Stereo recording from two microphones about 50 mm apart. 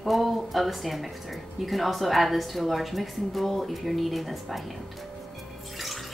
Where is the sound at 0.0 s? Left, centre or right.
Centre.